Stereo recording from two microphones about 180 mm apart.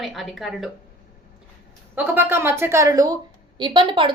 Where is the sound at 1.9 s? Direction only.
10° right (ahead or behind).